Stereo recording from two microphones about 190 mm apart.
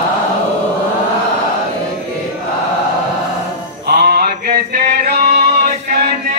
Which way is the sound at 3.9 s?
55° right (ahead or behind).